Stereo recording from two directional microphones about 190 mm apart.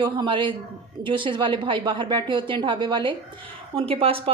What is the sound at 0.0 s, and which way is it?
Speech, 25° right (ahead or behind).